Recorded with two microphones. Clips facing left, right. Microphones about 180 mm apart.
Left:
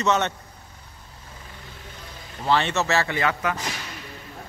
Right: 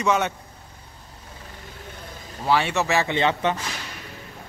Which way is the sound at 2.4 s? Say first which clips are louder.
Right 1 dB; 10° right (ahead or behind).